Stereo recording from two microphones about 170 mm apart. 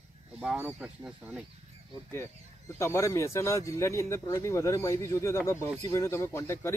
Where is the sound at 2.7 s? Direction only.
15° left (ahead or behind).